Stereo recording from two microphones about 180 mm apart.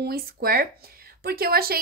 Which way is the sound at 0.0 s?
60° right (ahead or behind).